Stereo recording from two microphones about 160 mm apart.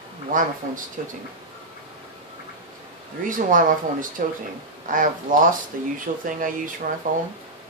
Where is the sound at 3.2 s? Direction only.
55° right (ahead or behind).